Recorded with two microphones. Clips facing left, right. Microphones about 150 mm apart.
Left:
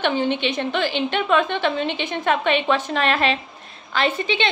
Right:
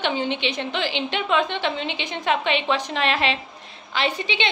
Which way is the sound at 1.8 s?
50° left (ahead or behind).